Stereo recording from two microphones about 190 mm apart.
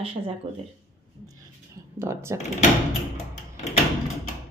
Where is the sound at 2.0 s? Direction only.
15° right (ahead or behind).